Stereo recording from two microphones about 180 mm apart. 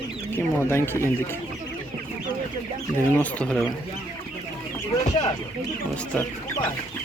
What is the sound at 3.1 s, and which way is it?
Speech, 5° left (ahead or behind).